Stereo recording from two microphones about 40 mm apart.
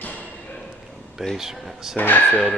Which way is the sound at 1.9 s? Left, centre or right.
Left.